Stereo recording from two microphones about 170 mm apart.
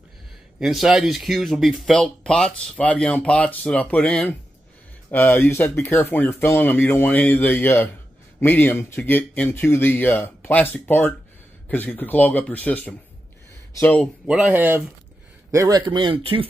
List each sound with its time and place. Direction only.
0.6 s speech: centre (ahead or behind)
14.2 s speech: 10° right (ahead or behind)
15.5 s speech: 20° right (ahead or behind)